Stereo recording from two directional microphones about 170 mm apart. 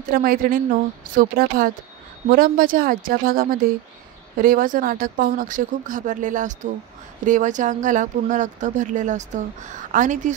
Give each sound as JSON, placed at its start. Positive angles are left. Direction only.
{"t": 0.1, "sound": "speech", "side_deg": -55}